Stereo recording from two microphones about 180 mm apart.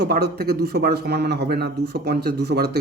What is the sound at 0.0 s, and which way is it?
A man's voice, 65° right (ahead or behind).